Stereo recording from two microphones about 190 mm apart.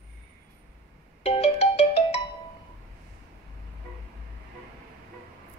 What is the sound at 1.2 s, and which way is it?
Ringtone, 35° left (ahead or behind).